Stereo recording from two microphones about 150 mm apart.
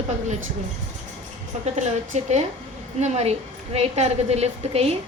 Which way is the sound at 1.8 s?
50° right (ahead or behind).